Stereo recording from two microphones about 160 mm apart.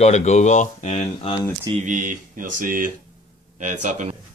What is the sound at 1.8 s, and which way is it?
Speech, 55° right (ahead or behind).